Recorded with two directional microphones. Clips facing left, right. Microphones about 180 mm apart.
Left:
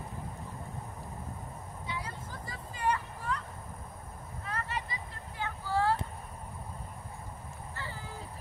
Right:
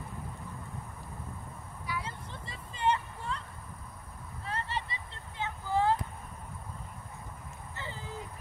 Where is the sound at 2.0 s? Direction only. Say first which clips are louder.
Even; 25° right (ahead or behind).